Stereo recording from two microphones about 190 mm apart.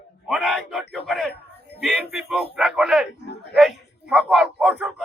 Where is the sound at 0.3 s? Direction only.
5° left (ahead or behind).